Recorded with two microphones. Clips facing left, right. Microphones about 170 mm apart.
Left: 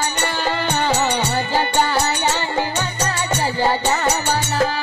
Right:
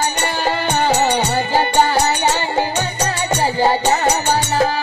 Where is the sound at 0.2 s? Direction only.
15° right (ahead or behind).